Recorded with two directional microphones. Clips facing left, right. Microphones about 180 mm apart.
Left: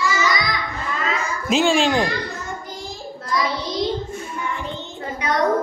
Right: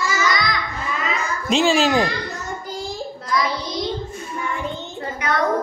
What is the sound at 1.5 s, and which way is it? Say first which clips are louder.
Speech: even; centre (ahead or behind).